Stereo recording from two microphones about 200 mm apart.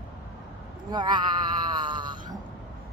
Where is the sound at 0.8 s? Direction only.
20° right (ahead or behind).